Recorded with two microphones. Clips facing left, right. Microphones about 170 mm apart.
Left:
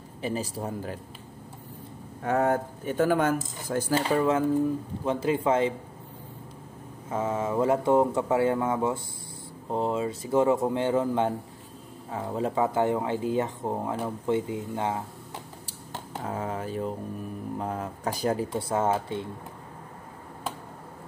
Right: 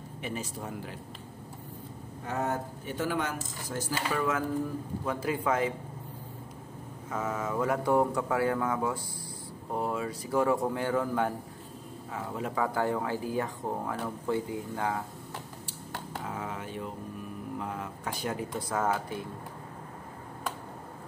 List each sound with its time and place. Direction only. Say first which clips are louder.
0.2 s speech: left 6 dB; 35° left (ahead or behind)
2.2 s speech: left 8 dB; 55° left (ahead or behind)
3.9 s speech: left 6 dB; 30° left (ahead or behind)
7.1 s speech: left 5 dB; 30° left (ahead or behind)
16.3 s a sound: left 8 dB; 35° left (ahead or behind)
17.6 s speech: left 5 dB; 40° left (ahead or behind)